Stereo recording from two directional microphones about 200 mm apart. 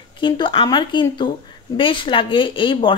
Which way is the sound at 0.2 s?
25° left (ahead or behind).